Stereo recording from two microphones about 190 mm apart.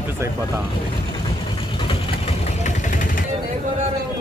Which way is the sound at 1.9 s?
35° left (ahead or behind).